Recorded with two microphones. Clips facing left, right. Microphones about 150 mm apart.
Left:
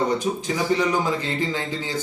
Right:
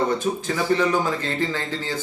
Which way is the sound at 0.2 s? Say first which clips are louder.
Even; 15° left (ahead or behind).